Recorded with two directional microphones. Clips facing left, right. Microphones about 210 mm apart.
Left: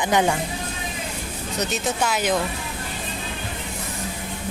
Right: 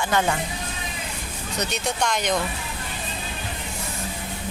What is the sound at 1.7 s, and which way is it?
Speech, 5° left (ahead or behind).